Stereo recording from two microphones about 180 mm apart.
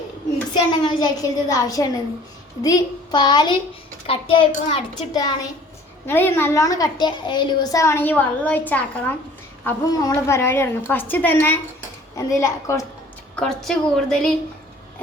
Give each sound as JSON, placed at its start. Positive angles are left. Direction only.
{"t": 0.5, "sound": "a woman's voice", "side_deg": 25}
{"t": 6.1, "sound": "a woman's voice", "side_deg": 10}
{"t": 13.3, "sound": "a woman's voice", "side_deg": 5}